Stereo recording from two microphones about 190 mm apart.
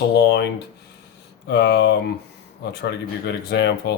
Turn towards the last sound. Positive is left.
turn(degrees=60)  # may be behind; listen again after turning